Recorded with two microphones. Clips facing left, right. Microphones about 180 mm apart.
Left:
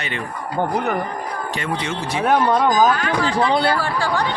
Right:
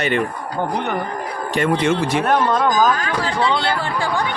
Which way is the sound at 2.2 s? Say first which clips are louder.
Left 4 dB; 10° left (ahead or behind).